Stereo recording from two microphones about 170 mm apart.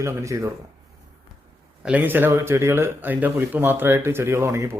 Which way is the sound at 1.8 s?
10° right (ahead or behind).